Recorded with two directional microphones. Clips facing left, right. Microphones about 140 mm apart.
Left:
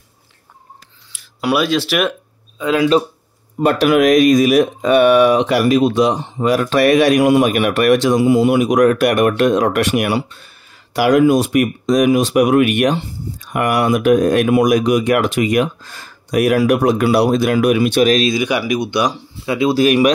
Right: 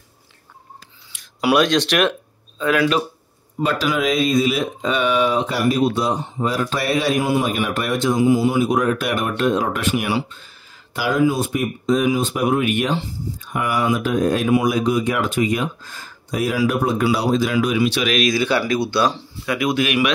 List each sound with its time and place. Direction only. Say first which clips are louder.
1.5 s speech: even; 5° left (ahead or behind)
2.6 s speech: left 3 dB; 15° left (ahead or behind)
3.6 s speech: left 8 dB; 65° left (ahead or behind)
18.3 s speech: left 2 dB; 15° left (ahead or behind)
19.5 s speech: left 6 dB; 30° left (ahead or behind)